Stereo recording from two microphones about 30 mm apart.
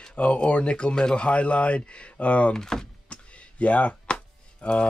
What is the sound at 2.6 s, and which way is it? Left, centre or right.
Speech, centre.